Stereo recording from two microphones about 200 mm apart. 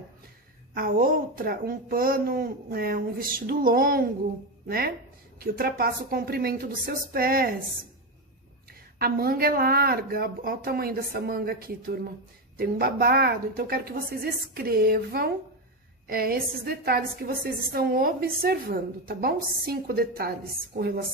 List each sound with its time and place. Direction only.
0.7 s a woman's voice: 45° right (ahead or behind)
8.9 s a woman's voice: 50° right (ahead or behind)